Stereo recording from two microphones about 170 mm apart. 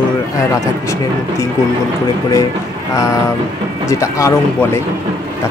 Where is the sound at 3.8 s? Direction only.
20° left (ahead or behind).